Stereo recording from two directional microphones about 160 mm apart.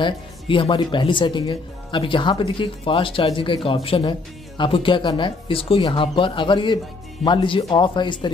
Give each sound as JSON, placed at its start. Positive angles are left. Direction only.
{"t": 0.0, "sound": "speech", "side_deg": 30}